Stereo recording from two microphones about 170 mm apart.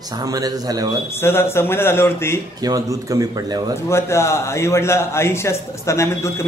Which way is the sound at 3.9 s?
15° left (ahead or behind).